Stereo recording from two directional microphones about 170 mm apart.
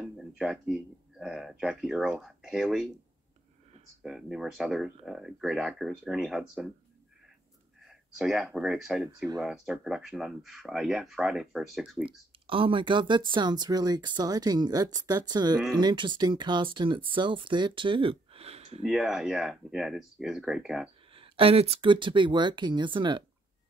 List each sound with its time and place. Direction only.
0.0 s speech: centre (ahead or behind)
4.0 s speech: 5° right (ahead or behind)
7.9 s speech: centre (ahead or behind)
12.4 s speech: 30° right (ahead or behind)
18.8 s speech: centre (ahead or behind)
21.1 s speech: 30° right (ahead or behind)